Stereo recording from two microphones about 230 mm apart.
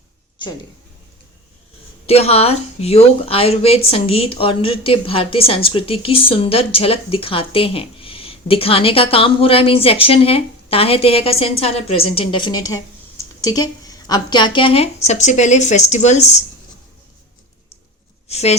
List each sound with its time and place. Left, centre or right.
2.0 s a woman's voice: left
18.3 s speech: left